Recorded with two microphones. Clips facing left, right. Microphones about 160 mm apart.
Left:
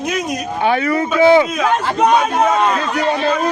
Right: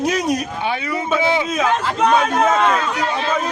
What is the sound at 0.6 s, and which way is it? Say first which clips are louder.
Speech: left 6 dB; 55° left (ahead or behind).